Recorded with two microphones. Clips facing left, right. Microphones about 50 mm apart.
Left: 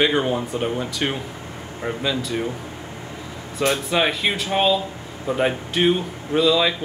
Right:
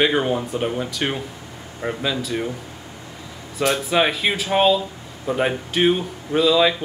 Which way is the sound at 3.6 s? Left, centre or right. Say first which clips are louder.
Right 1 dB; centre.